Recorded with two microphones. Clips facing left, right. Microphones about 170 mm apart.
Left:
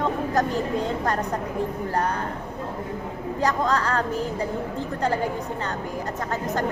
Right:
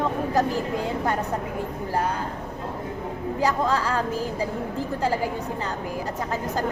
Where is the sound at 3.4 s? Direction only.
5° right (ahead or behind).